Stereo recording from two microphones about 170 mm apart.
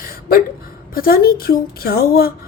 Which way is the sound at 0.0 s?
60° left (ahead or behind).